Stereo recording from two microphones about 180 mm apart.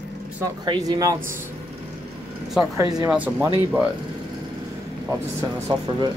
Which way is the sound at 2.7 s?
15° right (ahead or behind).